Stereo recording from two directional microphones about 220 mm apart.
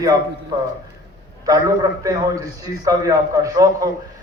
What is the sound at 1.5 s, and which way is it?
A man's voice, 15° right (ahead or behind).